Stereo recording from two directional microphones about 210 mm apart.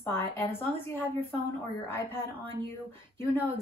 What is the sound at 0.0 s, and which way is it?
Speech, 10° left (ahead or behind).